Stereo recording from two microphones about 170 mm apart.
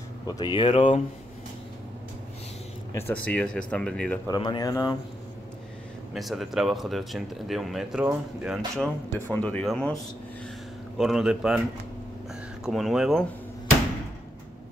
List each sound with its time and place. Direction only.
0.3 s speech: 25° left (ahead or behind)
2.9 s speech: 10° left (ahead or behind)
4.3 s speech: 25° left (ahead or behind)
6.1 s speech: centre (ahead or behind)
8.7 s speech: 5° left (ahead or behind)
11.0 s speech: centre (ahead or behind)
12.6 s speech: centre (ahead or behind)